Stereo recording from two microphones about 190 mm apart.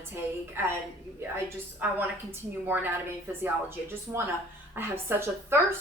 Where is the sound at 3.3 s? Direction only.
10° right (ahead or behind).